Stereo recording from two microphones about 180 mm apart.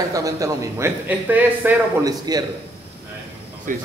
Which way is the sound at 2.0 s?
20° right (ahead or behind).